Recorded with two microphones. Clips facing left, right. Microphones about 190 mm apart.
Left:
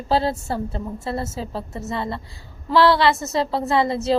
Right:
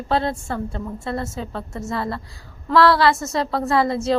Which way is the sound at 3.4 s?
30° left (ahead or behind).